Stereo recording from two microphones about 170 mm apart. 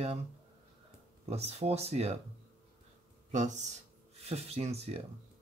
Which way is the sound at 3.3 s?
45° right (ahead or behind).